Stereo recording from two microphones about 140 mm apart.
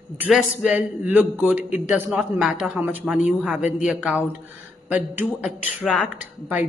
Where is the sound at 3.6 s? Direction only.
60° left (ahead or behind).